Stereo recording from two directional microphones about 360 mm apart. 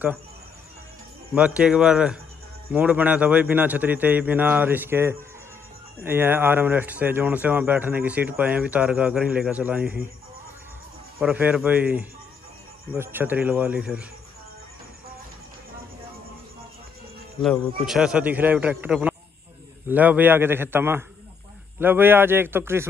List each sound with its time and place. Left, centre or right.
1.3 s speech: centre
11.1 s speech: centre
17.4 s speech: centre